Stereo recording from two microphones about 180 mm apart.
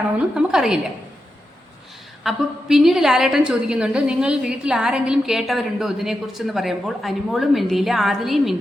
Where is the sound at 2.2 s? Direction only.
Centre (ahead or behind).